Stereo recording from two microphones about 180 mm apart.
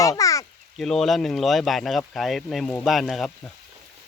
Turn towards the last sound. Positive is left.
turn(degrees=0)  # may be behind; listen again after turning